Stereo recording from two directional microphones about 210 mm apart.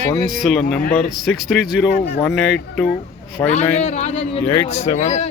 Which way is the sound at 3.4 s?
15° left (ahead or behind).